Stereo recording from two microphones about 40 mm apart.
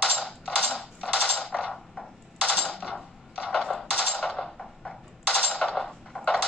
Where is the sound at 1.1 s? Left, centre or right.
Centre.